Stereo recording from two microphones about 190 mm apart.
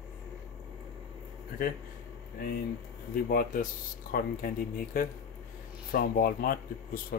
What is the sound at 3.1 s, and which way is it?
Speech, 50° left (ahead or behind).